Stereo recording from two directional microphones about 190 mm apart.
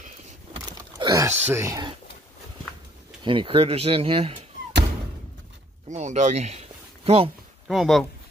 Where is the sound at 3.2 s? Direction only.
25° right (ahead or behind).